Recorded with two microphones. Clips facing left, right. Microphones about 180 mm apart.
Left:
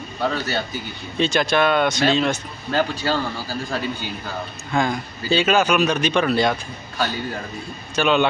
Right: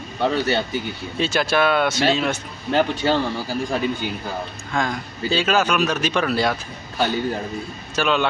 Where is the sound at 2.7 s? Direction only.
20° right (ahead or behind).